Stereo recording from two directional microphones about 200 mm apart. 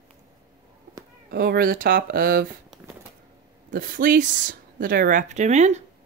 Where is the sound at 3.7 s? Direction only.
45° right (ahead or behind).